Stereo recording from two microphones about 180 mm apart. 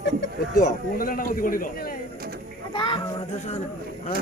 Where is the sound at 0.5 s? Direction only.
50° left (ahead or behind).